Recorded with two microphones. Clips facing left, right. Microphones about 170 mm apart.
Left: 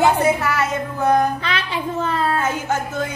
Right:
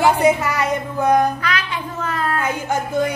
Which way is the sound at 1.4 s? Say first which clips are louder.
Even; 30° left (ahead or behind).